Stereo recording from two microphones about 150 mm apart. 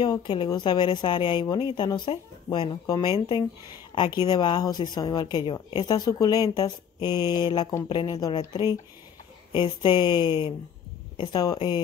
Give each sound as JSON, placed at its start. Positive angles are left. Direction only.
{"t": 0.0, "sound": "a woman's voice", "side_deg": 30}
{"t": 9.5, "sound": "a woman's voice", "side_deg": 30}